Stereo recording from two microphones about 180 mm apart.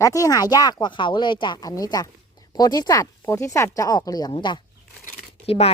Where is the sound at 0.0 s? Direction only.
20° left (ahead or behind).